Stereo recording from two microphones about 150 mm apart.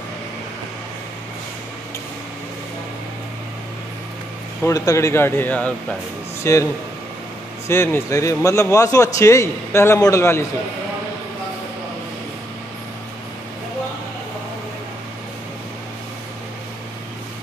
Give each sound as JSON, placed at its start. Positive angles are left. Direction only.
{"t": 4.6, "sound": "speech", "side_deg": 20}
{"t": 7.6, "sound": "a man's voice", "side_deg": 15}